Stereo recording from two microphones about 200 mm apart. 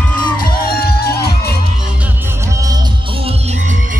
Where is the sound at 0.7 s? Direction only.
50° left (ahead or behind).